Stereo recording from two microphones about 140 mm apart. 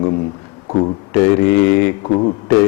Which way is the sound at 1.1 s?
20° left (ahead or behind).